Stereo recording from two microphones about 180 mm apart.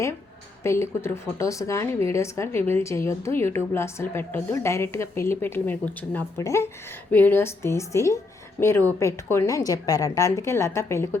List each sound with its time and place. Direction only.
0.6 s a woman's voice: 15° left (ahead or behind)